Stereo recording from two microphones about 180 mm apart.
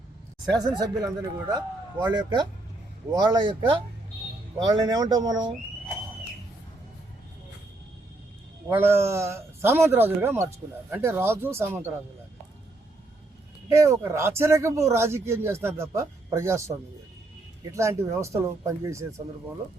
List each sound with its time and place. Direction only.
0.5 s speech: 20° right (ahead or behind)
8.7 s a man's voice: 15° right (ahead or behind)
13.7 s a man's voice: 15° right (ahead or behind)